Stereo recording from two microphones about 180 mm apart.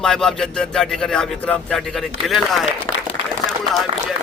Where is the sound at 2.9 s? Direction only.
20° left (ahead or behind).